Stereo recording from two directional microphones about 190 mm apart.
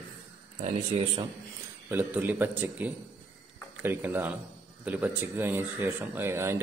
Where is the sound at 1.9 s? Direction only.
10° right (ahead or behind).